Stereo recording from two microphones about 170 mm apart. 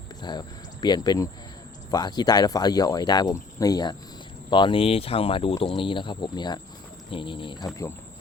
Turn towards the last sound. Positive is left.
turn(degrees=30)  # may be behind; listen again after turning